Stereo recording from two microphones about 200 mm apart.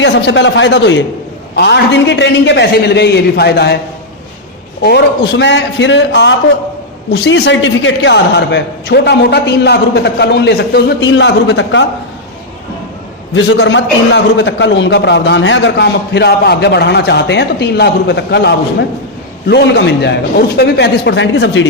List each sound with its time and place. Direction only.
0.0 s a man's voice: 60° left (ahead or behind)
4.8 s a man's voice: 55° left (ahead or behind)
13.3 s a man's voice: 65° left (ahead or behind)